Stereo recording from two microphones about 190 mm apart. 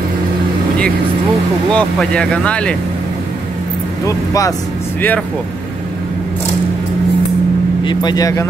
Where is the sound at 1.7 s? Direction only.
5° left (ahead or behind).